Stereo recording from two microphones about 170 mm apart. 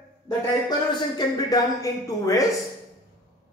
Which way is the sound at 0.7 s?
25° left (ahead or behind).